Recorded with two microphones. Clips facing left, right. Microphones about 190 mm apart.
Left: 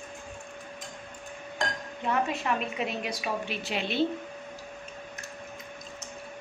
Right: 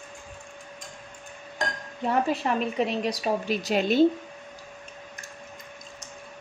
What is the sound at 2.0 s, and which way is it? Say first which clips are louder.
Speech: right 4 dB; 35° right (ahead or behind).